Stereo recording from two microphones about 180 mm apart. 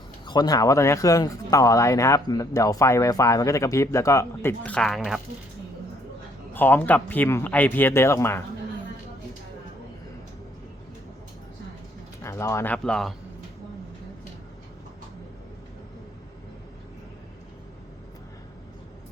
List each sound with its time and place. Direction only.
0.3 s speech: 20° left (ahead or behind); by 5.2 s centre (ahead or behind)
6.5 s speech: 10° left (ahead or behind)
12.2 s speech: 15° left (ahead or behind)